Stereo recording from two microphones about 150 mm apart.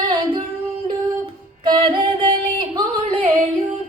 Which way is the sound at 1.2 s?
35° right (ahead or behind).